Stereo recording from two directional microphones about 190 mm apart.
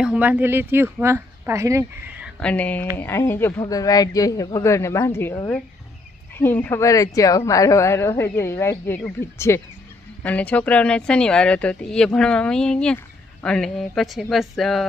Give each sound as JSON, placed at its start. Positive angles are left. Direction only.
{"t": 0.0, "sound": "speech", "side_deg": -5}
{"t": 2.4, "sound": "a woman's voice", "side_deg": 5}